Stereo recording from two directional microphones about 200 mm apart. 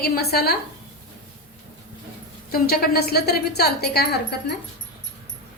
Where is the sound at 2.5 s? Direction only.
50° left (ahead or behind).